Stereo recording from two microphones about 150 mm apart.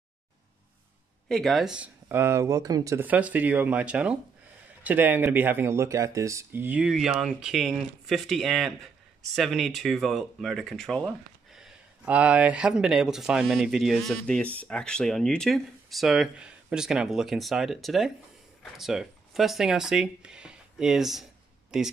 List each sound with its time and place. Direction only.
1.3 s speech: centre (ahead or behind)
2.0 s speech: 15° right (ahead or behind)
3.1 s speech: 10° right (ahead or behind)